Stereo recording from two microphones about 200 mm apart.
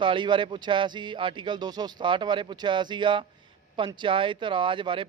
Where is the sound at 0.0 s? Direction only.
25° right (ahead or behind).